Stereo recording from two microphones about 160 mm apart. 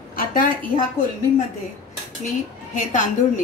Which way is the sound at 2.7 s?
50° left (ahead or behind).